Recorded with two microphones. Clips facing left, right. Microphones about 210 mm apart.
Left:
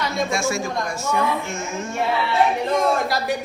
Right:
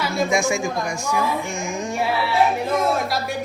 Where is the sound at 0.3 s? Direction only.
15° right (ahead or behind).